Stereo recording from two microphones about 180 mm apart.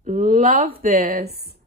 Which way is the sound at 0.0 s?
45° right (ahead or behind).